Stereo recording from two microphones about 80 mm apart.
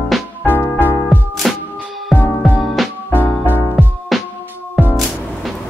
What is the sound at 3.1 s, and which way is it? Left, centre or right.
Music, left.